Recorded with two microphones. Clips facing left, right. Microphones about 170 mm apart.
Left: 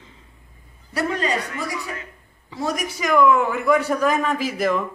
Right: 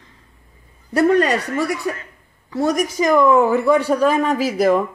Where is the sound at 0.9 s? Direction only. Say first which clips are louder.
Right 8 dB; 50° right (ahead or behind).